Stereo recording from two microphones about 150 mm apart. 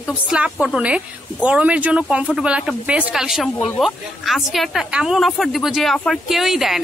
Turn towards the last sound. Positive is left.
turn(degrees=0)  # may be behind; listen again after turning